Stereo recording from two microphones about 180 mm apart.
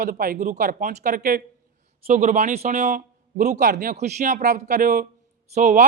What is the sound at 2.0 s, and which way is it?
A man's voice, 40° right (ahead or behind).